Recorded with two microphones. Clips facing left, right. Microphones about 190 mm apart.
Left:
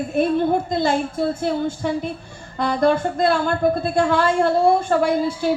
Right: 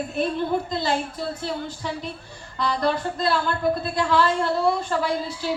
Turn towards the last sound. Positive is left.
turn(degrees=50)  # may be behind; listen again after turning